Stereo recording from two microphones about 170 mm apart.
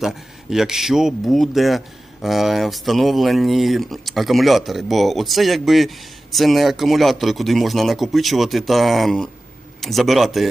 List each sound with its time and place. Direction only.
0.5 s speech: 5° right (ahead or behind)